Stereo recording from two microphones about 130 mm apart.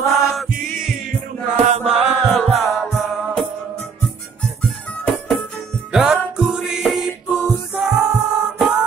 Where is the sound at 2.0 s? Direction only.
Centre (ahead or behind).